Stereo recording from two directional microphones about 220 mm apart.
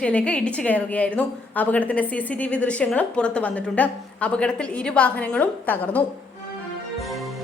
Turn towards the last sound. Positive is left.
turn(degrees=0)  # may be behind; listen again after turning